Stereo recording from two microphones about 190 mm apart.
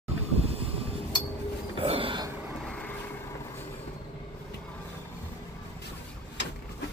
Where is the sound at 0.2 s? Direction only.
30° right (ahead or behind).